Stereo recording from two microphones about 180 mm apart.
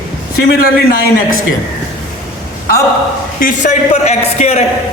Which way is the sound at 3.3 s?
45° left (ahead or behind).